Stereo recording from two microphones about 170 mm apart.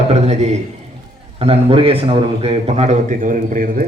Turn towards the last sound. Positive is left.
turn(degrees=-55)  # may be behind; listen again after turning